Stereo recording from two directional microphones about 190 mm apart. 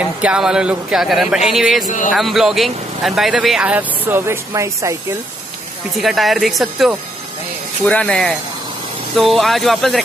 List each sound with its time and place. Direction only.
0.2 s speech: 5° right (ahead or behind)
1.9 s speech: 40° left (ahead or behind)
2.1 s speech: centre (ahead or behind)
5.9 s speech: centre (ahead or behind)